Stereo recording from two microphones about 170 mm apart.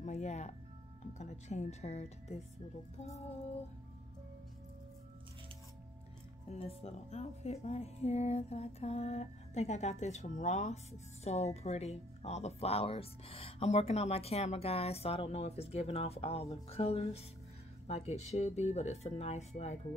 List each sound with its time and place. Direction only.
0.0 s music: 40° left (ahead or behind)
1.1 s speech: 45° left (ahead or behind)
6.8 s speech: 40° left (ahead or behind)